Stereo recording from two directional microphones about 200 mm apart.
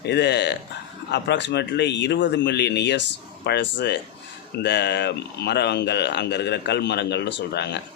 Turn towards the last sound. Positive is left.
turn(degrees=60)  # may be behind; listen again after turning